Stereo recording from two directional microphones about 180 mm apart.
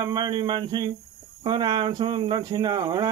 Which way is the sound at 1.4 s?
25° right (ahead or behind).